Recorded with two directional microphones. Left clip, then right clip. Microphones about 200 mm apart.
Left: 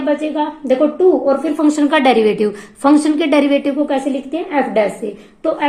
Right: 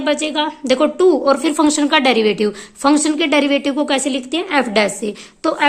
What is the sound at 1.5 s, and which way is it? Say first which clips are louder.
A woman's voice: even; 25° right (ahead or behind).